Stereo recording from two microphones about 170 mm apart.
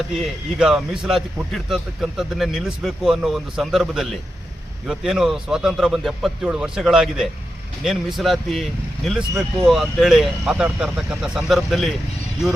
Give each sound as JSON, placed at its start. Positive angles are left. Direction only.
{"t": 0.1, "sound": "a man's voice", "side_deg": 0}